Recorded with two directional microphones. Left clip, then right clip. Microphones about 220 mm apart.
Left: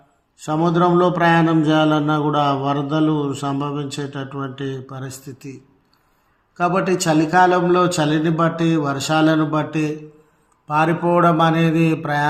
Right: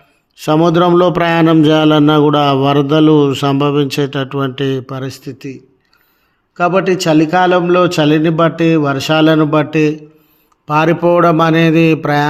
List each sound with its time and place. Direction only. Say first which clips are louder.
0.3 s a man's voice: right 8 dB; 50° right (ahead or behind)
6.6 s a man's voice: right 6 dB; 45° right (ahead or behind)